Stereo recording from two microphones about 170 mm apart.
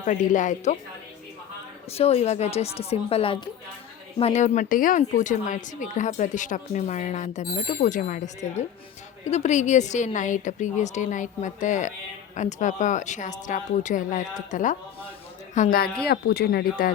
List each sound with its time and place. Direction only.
0.0 s speech: 50° left (ahead or behind)
1.9 s speech: 35° left (ahead or behind)
16.0 s speech: 70° left (ahead or behind)